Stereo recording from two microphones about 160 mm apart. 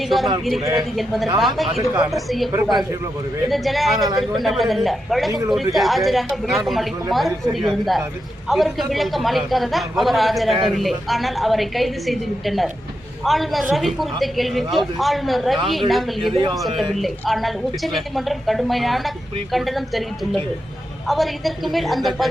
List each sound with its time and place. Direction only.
0.8 s a man's voice: centre (ahead or behind)
2.5 s speech: 20° right (ahead or behind)
3.5 s a man's voice: centre (ahead or behind)